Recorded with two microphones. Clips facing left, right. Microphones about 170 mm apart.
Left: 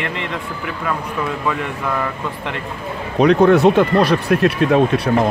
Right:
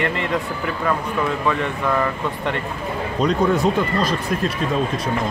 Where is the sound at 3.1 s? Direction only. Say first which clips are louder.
Left 7 dB; 70° left (ahead or behind).